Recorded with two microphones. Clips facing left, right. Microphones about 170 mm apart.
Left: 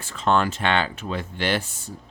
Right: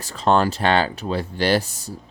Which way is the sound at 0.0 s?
35° right (ahead or behind).